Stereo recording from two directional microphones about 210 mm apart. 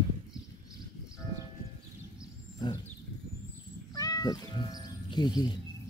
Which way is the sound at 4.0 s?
20° left (ahead or behind).